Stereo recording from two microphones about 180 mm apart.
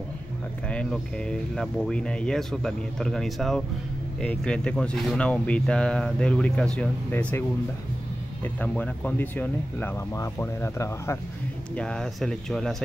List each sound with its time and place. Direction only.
0.7 s speech: 5° left (ahead or behind)
8.5 s speech: 5° left (ahead or behind)